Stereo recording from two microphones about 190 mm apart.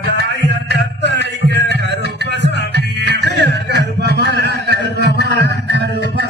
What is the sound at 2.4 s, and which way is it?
Music, 65° right (ahead or behind).